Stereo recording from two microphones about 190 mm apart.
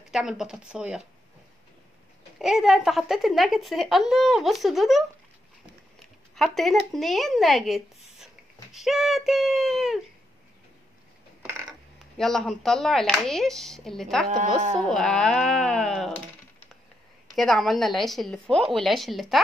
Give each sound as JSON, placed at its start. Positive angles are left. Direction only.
{"t": 0.1, "sound": "speech", "side_deg": -5}
{"t": 2.3, "sound": "speech", "side_deg": 0}
{"t": 6.3, "sound": "speech", "side_deg": 0}
{"t": 12.0, "sound": "speech", "side_deg": 0}
{"t": 14.2, "sound": "speech", "side_deg": -40}
{"t": 14.9, "sound": "speech", "side_deg": 5}
{"t": 17.4, "sound": "speech", "side_deg": 0}